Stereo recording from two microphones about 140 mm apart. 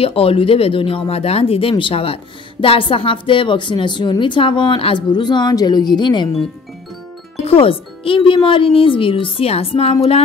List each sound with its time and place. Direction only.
0.0 s a woman's voice: 45° left (ahead or behind)
7.4 s a woman's voice: 40° left (ahead or behind)